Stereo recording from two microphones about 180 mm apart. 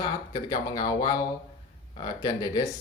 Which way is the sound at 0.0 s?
25° left (ahead or behind).